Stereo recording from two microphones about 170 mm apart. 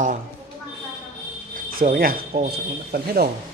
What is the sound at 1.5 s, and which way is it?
Cricket, 55° right (ahead or behind).